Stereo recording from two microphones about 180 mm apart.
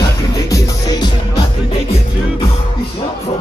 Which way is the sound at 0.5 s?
20° left (ahead or behind).